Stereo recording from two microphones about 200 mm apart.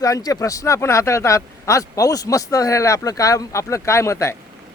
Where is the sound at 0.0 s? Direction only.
15° left (ahead or behind).